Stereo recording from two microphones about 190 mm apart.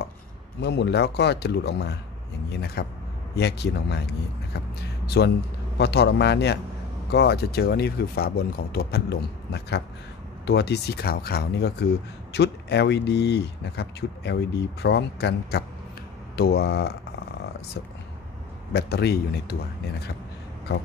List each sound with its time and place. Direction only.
0.6 s speech: 65° left (ahead or behind)
18.7 s speech: 60° left (ahead or behind)